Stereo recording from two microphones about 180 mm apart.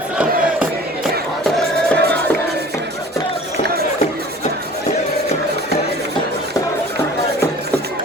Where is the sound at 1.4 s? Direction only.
Centre (ahead or behind).